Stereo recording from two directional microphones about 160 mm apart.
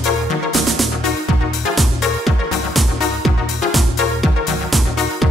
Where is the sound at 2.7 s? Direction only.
Centre (ahead or behind).